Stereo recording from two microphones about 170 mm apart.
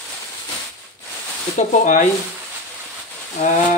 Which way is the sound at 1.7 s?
45° left (ahead or behind).